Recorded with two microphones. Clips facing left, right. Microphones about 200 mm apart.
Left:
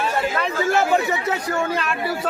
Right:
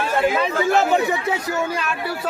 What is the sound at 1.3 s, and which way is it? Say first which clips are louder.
Speech: even; 5° right (ahead or behind).